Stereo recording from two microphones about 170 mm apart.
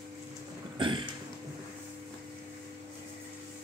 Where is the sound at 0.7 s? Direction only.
30° right (ahead or behind).